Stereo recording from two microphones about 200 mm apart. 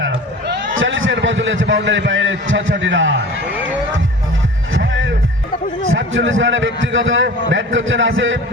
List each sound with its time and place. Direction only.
0.0 s a sound: 70° right (ahead or behind)
4.7 s music: 70° right (ahead or behind)
5.9 s a man's voice: 70° right (ahead or behind)